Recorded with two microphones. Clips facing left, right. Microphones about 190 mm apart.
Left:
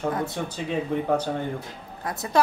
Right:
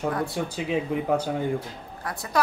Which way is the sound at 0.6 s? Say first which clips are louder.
Even; 5° right (ahead or behind).